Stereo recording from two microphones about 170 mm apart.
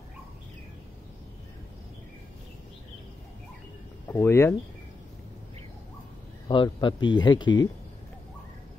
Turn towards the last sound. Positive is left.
turn(degrees=25)  # may be behind; listen again after turning